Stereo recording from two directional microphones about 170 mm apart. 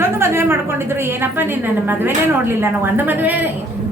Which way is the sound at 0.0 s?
15° right (ahead or behind).